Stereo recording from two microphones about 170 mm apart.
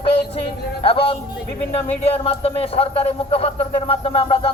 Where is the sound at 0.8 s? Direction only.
35° left (ahead or behind).